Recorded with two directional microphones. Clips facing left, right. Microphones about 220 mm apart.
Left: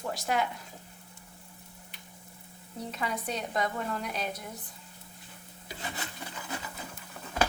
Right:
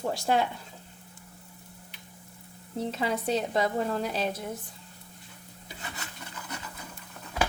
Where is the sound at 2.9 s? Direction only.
30° right (ahead or behind).